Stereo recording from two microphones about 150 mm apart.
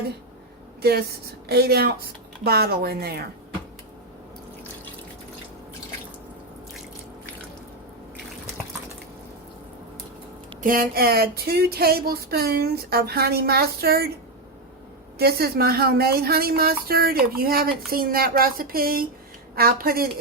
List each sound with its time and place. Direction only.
0.8 s a woman's voice: 90° right
10.6 s a woman's voice: 70° right (ahead or behind); by 14.1 s 90° right
15.2 s a woman's voice: 90° right